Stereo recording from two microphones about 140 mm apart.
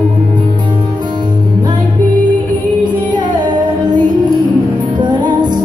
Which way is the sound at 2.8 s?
30° right (ahead or behind).